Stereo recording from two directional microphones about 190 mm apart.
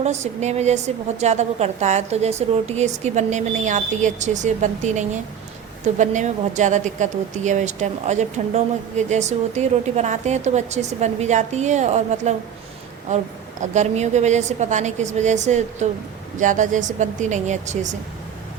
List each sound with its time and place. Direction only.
0.0 s a woman's voice: 35° right (ahead or behind)
13.6 s a woman's voice: 40° right (ahead or behind)